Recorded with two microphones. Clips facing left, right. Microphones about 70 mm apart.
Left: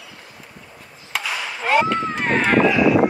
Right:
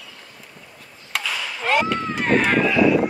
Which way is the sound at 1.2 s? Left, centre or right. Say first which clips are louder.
Left 2 dB; centre.